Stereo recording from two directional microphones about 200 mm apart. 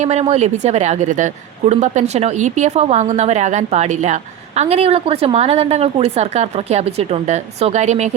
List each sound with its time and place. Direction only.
0.0 s a woman's voice: 35° right (ahead or behind)